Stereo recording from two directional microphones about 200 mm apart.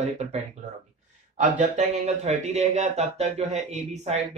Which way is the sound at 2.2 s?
35° right (ahead or behind).